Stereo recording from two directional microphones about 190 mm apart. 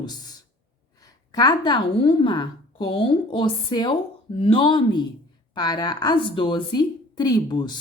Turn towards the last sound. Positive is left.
turn(degrees=25)  # may be behind; listen again after turning